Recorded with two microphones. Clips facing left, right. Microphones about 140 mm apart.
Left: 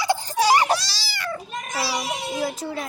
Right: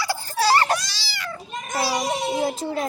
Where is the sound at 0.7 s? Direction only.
35° left (ahead or behind).